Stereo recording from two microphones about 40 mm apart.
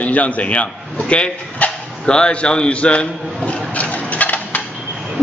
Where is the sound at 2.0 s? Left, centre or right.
Left.